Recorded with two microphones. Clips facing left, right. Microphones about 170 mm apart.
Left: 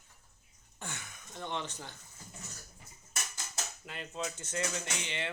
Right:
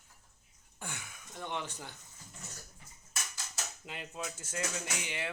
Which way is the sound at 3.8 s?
15° right (ahead or behind).